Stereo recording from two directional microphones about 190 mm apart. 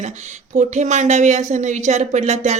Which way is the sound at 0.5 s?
40° right (ahead or behind).